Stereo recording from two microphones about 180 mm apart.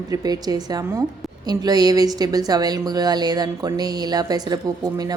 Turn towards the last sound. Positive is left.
turn(degrees=-20)  # may be behind; listen again after turning